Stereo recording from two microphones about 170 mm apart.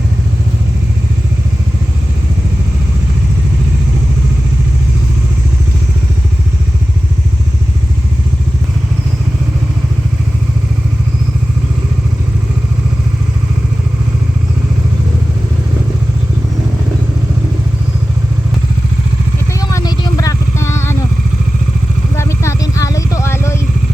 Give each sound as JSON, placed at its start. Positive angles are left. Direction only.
{"t": 19.5, "sound": "vehicle", "side_deg": 20}
{"t": 22.1, "sound": "vehicle", "side_deg": 15}